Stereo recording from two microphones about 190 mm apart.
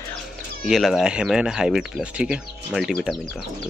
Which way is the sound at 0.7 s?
Centre (ahead or behind).